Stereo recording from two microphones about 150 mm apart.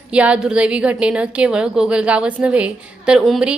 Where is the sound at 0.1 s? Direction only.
5° right (ahead or behind).